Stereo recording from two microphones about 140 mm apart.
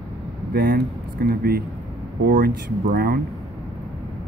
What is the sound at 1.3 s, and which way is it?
Speech, 90° right.